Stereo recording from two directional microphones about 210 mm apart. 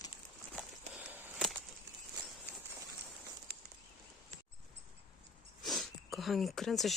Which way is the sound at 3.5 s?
50° right (ahead or behind).